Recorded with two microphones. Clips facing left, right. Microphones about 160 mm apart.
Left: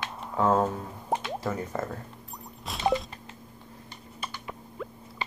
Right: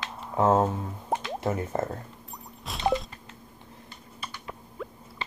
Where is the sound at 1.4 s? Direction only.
25° right (ahead or behind).